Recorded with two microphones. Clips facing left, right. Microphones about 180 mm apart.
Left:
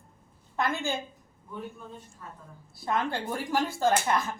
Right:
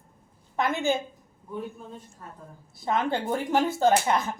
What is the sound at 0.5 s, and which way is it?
Speech, 20° right (ahead or behind).